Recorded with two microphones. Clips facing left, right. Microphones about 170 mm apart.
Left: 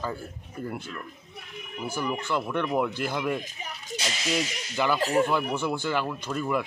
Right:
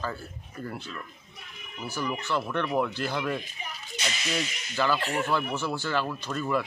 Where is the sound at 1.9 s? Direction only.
10° left (ahead or behind).